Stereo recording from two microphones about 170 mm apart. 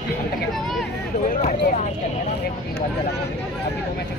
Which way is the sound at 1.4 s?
45° left (ahead or behind).